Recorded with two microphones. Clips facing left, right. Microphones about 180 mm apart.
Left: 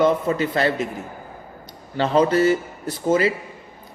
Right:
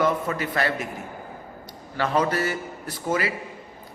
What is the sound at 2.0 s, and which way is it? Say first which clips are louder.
A man's voice: left 6 dB; 25° left (ahead or behind).